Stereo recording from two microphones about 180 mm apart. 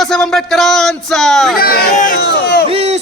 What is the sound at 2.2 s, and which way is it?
Speech, 65° left (ahead or behind).